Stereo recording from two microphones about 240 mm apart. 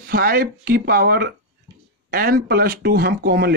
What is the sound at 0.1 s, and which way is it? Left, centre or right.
Speech, right.